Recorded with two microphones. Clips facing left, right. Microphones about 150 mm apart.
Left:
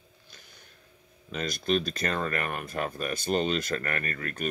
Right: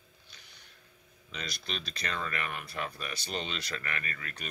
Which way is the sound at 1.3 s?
45° left (ahead or behind).